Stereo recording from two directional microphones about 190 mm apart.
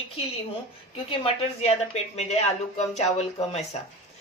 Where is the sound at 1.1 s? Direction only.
30° left (ahead or behind).